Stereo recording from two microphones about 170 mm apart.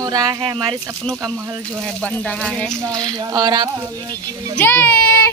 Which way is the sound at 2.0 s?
5° left (ahead or behind).